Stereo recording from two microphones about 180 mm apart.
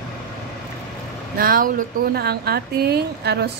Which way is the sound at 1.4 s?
50° right (ahead or behind).